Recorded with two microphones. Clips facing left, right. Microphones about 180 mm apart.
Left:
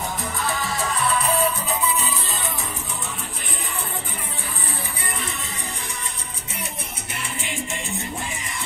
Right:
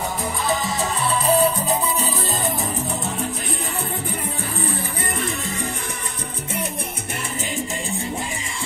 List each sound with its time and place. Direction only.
0.6 s music: 20° right (ahead or behind); by 2.5 s 40° right (ahead or behind)